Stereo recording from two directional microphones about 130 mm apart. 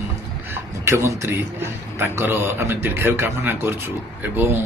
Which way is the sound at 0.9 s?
20° right (ahead or behind).